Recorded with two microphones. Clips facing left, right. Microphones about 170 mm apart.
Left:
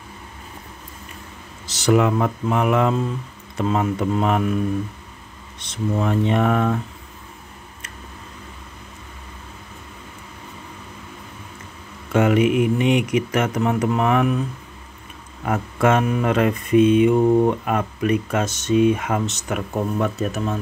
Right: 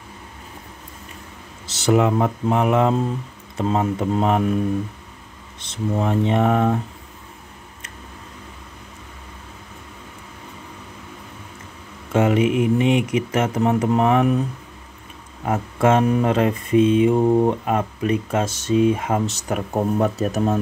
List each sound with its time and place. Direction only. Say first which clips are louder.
1.7 s speech: even; 25° right (ahead or behind)
5.7 s speech: even; 25° right (ahead or behind)
12.1 s speech: left 1 dB; 25° right (ahead or behind)
15.4 s speech: right 1 dB; 25° right (ahead or behind)